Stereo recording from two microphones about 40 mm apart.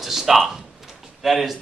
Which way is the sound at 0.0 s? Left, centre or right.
Centre.